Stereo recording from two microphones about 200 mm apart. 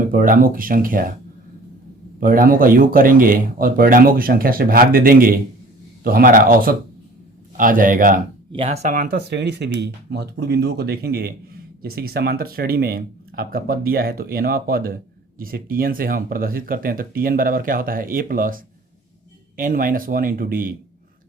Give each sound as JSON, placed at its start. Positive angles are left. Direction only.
{"t": 0.1, "sound": "speech", "side_deg": -45}
{"t": 2.2, "sound": "speech", "side_deg": -45}
{"t": 8.5, "sound": "speech", "side_deg": -30}